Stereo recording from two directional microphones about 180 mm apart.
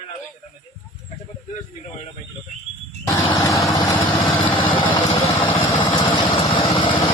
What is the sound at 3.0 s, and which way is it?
Vehicle, 20° left (ahead or behind).